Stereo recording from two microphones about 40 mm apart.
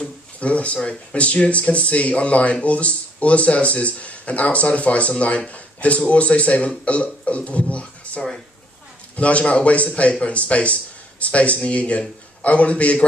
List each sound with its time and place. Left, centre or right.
0.4 s speech: left
8.0 s a sound: left
9.1 s speech: left